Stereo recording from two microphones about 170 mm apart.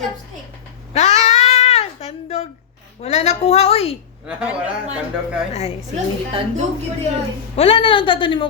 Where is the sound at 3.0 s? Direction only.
40° left (ahead or behind).